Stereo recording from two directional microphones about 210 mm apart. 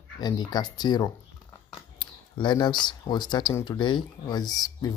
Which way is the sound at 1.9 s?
20° left (ahead or behind).